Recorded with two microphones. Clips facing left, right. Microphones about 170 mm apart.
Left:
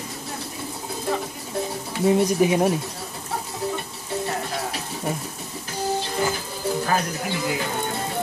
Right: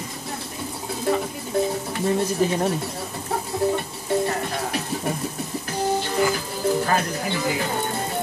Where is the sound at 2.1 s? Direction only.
15° left (ahead or behind).